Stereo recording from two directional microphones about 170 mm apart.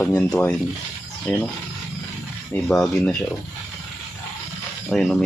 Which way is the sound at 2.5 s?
5° left (ahead or behind).